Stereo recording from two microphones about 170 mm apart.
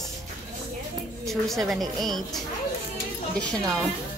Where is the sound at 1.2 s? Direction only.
Centre (ahead or behind).